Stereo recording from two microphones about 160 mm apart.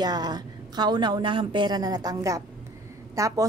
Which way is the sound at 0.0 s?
25° right (ahead or behind).